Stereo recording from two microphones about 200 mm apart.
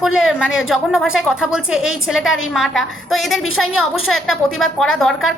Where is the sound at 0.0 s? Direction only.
Centre (ahead or behind).